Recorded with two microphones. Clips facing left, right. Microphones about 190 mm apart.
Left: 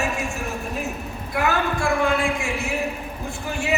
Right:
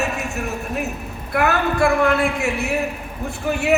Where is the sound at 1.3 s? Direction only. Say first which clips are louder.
Right 3 dB; 65° right (ahead or behind).